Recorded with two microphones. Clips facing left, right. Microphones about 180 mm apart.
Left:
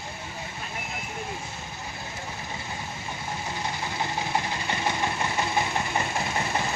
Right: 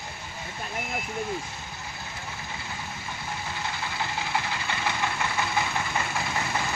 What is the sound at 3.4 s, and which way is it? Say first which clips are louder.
Engine: left 2 dB; 20° left (ahead or behind).